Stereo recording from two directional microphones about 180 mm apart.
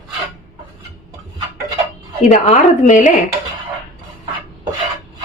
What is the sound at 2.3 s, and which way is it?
Speech, 40° left (ahead or behind).